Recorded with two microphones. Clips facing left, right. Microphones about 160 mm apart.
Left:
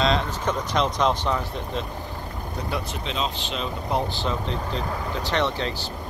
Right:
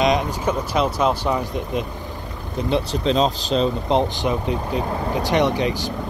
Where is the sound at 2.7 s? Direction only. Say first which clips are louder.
Right 12 dB; 35° right (ahead or behind).